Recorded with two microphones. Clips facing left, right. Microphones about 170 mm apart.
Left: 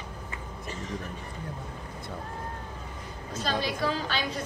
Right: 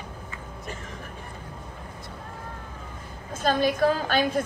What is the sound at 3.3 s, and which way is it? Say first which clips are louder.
A woman's voice: right 7 dB; 50° right (ahead or behind).